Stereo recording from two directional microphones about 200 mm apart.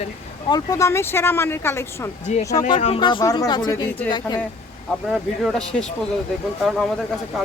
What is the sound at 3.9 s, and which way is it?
Speech, 10° left (ahead or behind).